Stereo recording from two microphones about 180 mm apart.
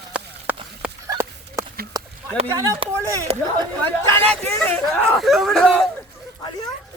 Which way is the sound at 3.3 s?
35° right (ahead or behind).